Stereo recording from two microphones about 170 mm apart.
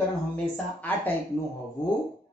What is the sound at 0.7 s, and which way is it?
Speech, 10° left (ahead or behind).